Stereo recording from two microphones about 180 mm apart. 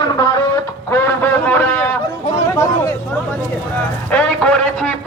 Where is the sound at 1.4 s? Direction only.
10° left (ahead or behind).